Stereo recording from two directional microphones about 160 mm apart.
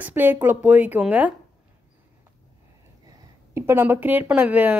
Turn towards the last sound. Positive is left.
turn(degrees=-10)  # may be behind; listen again after turning